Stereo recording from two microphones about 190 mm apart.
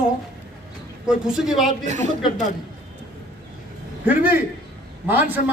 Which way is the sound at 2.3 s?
40° left (ahead or behind).